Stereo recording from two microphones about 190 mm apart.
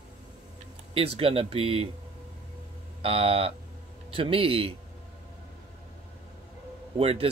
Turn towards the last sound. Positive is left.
turn(degrees=-30)  # may be behind; listen again after turning